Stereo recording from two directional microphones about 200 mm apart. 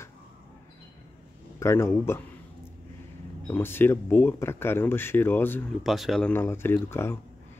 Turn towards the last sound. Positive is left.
turn(degrees=10)  # may be behind; listen again after turning